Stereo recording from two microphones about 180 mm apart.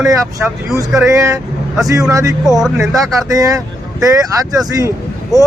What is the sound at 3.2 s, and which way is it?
Speech, 20° right (ahead or behind).